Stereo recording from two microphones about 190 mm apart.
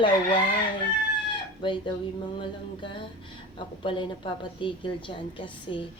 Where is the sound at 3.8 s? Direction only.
25° left (ahead or behind).